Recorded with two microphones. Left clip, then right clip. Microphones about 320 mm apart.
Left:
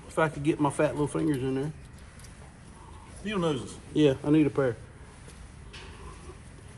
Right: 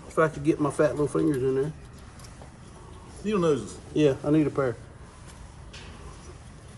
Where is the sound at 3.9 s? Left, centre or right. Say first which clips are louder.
Right 1 dB; left.